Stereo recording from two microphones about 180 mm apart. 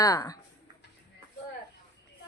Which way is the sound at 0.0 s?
20° left (ahead or behind).